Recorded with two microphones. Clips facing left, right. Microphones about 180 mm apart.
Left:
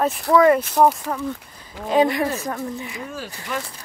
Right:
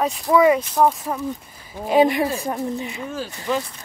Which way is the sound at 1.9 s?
15° right (ahead or behind).